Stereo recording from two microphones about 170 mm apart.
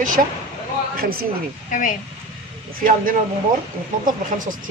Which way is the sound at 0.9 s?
60° right (ahead or behind).